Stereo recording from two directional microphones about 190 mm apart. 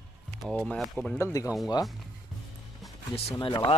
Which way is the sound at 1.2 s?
15° left (ahead or behind).